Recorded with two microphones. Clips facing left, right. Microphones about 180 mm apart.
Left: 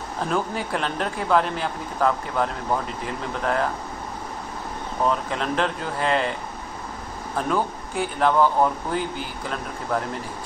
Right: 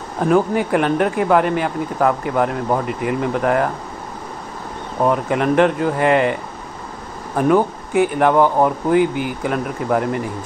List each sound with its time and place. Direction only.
0.3 s speech: 65° right (ahead or behind)
5.0 s speech: 65° right (ahead or behind)
7.3 s speech: 65° right (ahead or behind)